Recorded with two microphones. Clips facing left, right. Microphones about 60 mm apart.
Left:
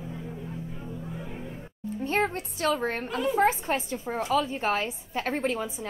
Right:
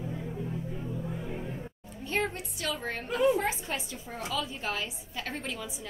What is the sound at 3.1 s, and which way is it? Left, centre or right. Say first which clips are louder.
A woman's voice: left 1 dB; left.